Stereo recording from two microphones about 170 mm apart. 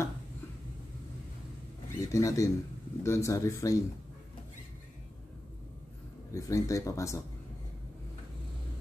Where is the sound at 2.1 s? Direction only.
20° left (ahead or behind).